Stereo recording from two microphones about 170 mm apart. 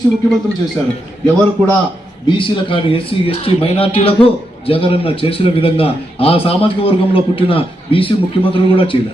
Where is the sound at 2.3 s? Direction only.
30° left (ahead or behind).